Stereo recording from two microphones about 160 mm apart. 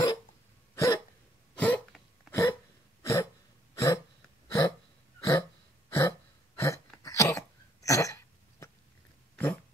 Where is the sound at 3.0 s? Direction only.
20° left (ahead or behind).